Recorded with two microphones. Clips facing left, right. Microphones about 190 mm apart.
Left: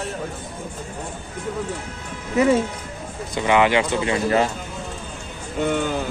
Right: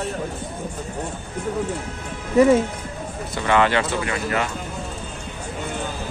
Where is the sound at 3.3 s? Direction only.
15° left (ahead or behind).